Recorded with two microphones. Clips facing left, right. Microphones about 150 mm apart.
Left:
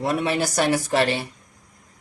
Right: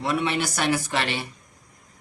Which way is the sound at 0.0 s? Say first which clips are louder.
Left 2 dB; 45° left (ahead or behind).